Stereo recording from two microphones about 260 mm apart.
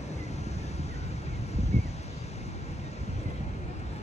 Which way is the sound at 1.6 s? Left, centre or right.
Left.